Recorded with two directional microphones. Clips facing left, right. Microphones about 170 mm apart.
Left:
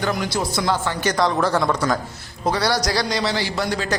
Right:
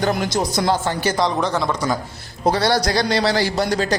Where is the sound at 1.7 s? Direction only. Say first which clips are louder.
Left 1 dB; 10° right (ahead or behind).